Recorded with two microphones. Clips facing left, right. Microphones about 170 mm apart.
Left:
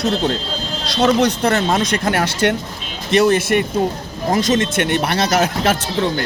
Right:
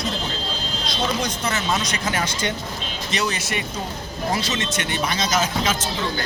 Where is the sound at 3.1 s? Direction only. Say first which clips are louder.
Left 13 dB; 55° left (ahead or behind).